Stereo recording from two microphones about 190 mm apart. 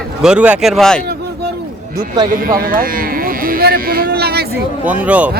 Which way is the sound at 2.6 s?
50° right (ahead or behind).